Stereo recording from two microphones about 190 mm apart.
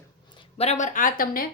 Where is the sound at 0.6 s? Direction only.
40° left (ahead or behind).